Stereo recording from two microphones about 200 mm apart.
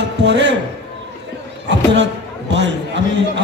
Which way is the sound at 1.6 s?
60° right (ahead or behind).